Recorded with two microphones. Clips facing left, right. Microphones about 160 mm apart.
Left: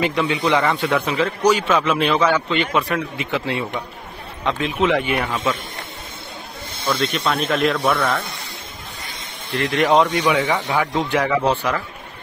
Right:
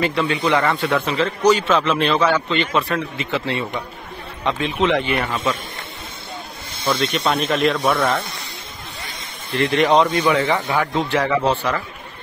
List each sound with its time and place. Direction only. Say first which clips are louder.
0.0 s a man's voice: even; 15° left (ahead or behind); by 5.6 s centre (ahead or behind)
7.0 s speech: right 1 dB; centre (ahead or behind)
9.6 s a man's voice: right 1 dB; centre (ahead or behind)